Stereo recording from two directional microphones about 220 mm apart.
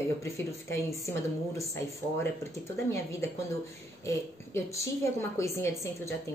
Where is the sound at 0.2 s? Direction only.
15° left (ahead or behind).